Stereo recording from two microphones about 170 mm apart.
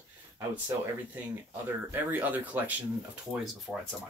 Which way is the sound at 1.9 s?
10° right (ahead or behind).